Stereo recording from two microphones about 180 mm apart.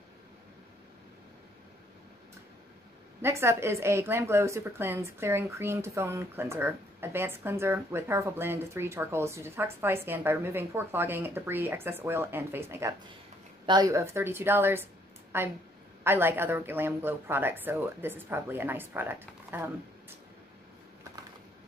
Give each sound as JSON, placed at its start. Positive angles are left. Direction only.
{"t": 3.2, "sound": "a woman's voice", "side_deg": -15}